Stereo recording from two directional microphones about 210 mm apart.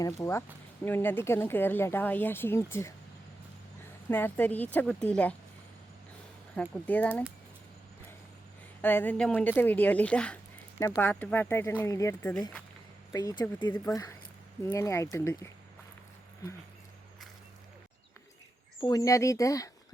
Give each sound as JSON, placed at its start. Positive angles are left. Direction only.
{"t": 0.0, "sound": "speech", "side_deg": 15}
{"t": 4.1, "sound": "speech", "side_deg": 10}
{"t": 6.6, "sound": "speech", "side_deg": 5}
{"t": 8.8, "sound": "speech", "side_deg": 10}
{"t": 18.8, "sound": "speech", "side_deg": 15}